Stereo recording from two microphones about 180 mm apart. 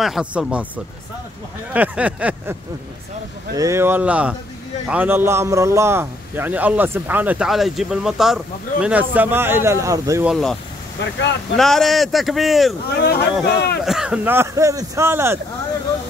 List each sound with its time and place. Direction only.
0.0 s speech: 5° right (ahead or behind)
1.7 s speech: 5° right (ahead or behind)
3.5 s speech: 15° right (ahead or behind)
10.2 s speech: centre (ahead or behind)
12.9 s speech: 60° left (ahead or behind)
13.8 s speech: 5° right (ahead or behind)